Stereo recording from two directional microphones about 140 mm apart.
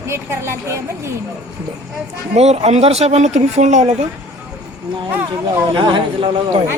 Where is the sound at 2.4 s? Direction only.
50° right (ahead or behind).